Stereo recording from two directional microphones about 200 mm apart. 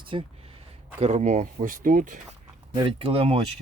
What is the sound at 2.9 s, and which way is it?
Speech, 30° right (ahead or behind).